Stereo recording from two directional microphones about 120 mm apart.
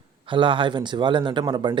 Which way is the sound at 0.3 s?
45° right (ahead or behind).